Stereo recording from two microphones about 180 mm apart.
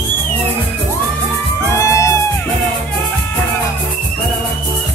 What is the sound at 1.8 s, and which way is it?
Music, 15° left (ahead or behind).